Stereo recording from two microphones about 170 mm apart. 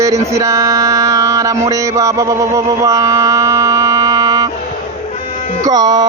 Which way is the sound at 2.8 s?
20° right (ahead or behind).